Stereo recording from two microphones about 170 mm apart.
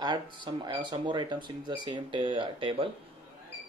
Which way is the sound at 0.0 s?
25° right (ahead or behind).